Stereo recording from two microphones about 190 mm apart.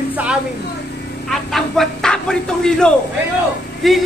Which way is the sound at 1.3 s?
Centre (ahead or behind).